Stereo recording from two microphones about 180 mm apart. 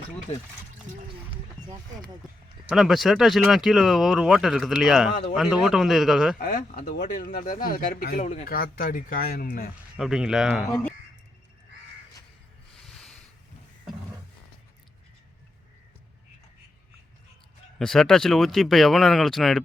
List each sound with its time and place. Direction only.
1.6 s speech: 20° right (ahead or behind)
2.6 s speech: centre (ahead or behind)
6.4 s speech: 45° left (ahead or behind)
8.4 s speech: 55° left (ahead or behind)
10.0 s speech: 5° right (ahead or behind)
12.7 s a sound: centre (ahead or behind)
17.7 s speech: centre (ahead or behind)